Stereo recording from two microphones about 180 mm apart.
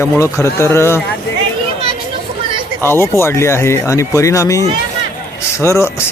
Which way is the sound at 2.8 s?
15° left (ahead or behind).